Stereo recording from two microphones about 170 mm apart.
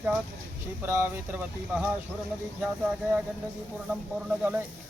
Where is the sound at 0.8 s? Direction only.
15° right (ahead or behind).